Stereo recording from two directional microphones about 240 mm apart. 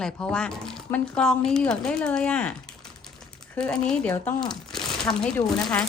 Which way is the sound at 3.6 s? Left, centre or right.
Centre.